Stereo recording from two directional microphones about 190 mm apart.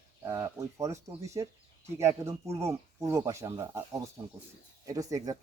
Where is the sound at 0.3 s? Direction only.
20° right (ahead or behind).